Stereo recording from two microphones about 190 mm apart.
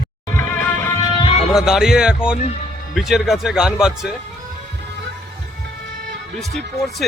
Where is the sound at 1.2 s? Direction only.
30° left (ahead or behind).